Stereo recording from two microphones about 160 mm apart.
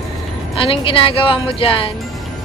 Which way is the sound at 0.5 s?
35° left (ahead or behind).